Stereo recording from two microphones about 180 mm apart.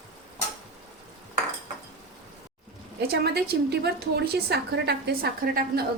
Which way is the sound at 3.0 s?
65° right (ahead or behind).